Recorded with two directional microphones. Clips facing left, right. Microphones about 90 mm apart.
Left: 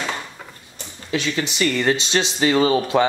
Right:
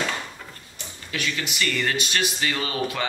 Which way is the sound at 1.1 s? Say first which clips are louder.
Left 6 dB; 30° left (ahead or behind).